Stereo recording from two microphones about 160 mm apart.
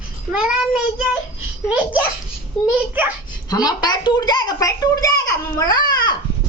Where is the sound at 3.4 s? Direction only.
25° left (ahead or behind).